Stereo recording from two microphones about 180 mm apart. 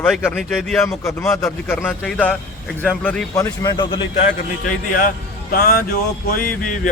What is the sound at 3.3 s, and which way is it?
Speech, 20° left (ahead or behind).